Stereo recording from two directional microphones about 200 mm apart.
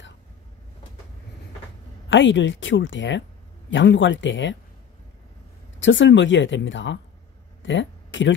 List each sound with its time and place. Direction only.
2.0 s speech: 65° left (ahead or behind)
5.8 s speech: 65° left (ahead or behind)
7.6 s a sound: 70° left (ahead or behind)